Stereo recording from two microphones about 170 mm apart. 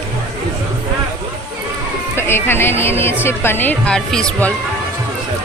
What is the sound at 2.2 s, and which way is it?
A woman's voice, 15° left (ahead or behind).